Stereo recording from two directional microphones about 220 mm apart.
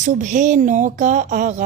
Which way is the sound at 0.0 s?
35° right (ahead or behind).